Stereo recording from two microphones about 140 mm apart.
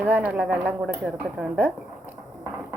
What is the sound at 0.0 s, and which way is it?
Speech, 10° right (ahead or behind).